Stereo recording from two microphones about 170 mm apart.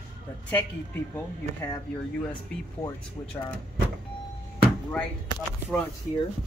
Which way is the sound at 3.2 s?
20° left (ahead or behind).